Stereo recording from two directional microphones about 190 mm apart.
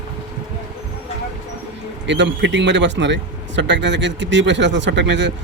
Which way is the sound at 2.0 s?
70° right (ahead or behind).